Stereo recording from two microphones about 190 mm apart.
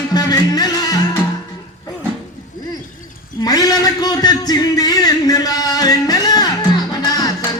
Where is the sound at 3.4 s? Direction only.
20° left (ahead or behind).